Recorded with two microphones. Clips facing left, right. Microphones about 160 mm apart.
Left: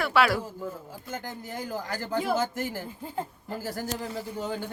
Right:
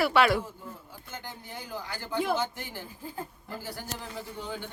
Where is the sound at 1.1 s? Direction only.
45° left (ahead or behind).